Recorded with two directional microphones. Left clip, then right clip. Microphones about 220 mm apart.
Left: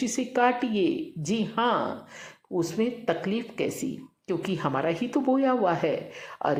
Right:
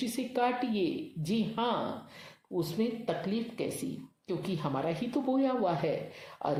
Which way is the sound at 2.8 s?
20° left (ahead or behind).